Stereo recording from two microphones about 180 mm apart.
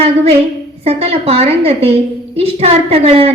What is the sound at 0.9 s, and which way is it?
A woman's voice, 35° right (ahead or behind).